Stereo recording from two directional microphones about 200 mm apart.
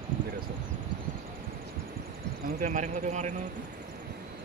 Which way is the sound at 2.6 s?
40° right (ahead or behind).